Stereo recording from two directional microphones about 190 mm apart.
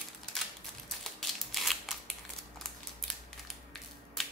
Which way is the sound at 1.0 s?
Centre (ahead or behind).